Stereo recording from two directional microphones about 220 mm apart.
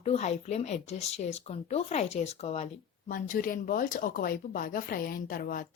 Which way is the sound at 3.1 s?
40° left (ahead or behind).